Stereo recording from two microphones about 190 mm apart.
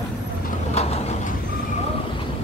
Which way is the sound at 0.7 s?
35° left (ahead or behind).